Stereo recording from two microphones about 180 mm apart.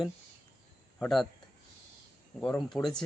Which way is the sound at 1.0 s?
Centre (ahead or behind).